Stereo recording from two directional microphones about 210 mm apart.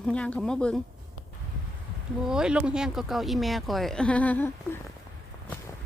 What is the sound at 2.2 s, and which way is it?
A woman's voice, 5° right (ahead or behind).